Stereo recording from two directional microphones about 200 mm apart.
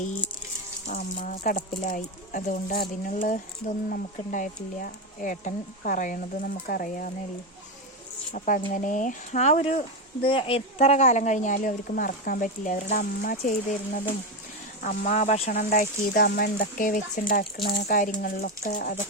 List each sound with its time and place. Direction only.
0.9 s speech: 35° left (ahead or behind)
8.3 s speech: 40° left (ahead or behind)
15.5 s speech: 45° left (ahead or behind)
17.8 s speech: 40° left (ahead or behind)